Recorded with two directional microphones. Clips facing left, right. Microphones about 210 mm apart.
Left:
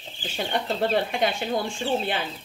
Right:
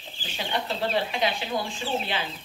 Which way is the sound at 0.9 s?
50° left (ahead or behind).